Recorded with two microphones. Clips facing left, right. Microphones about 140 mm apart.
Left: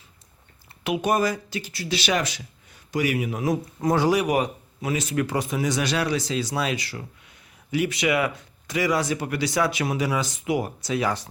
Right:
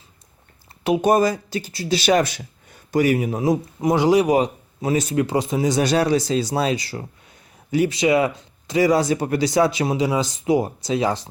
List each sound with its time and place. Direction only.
0.9 s speech: 35° right (ahead or behind)
3.8 s speech: 15° right (ahead or behind)
4.2 s speech: 30° right (ahead or behind)
5.1 s speech: 25° right (ahead or behind)